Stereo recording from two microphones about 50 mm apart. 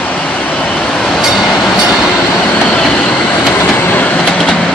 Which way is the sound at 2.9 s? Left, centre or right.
Left.